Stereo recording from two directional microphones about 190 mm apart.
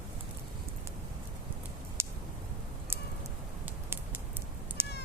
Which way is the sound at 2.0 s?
15° right (ahead or behind).